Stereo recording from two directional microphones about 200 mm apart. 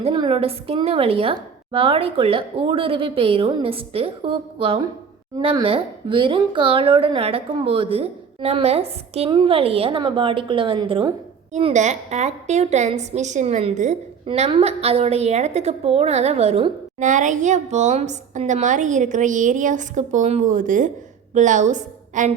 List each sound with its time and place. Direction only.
0.0 s speech: 25° right (ahead or behind)
11.5 s a woman's voice: 35° right (ahead or behind)